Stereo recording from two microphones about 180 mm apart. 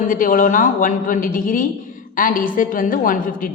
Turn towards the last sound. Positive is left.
turn(degrees=50)  # may be behind; listen again after turning